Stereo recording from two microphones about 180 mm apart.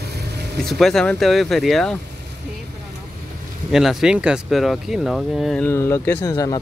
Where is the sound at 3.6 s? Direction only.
Centre (ahead or behind).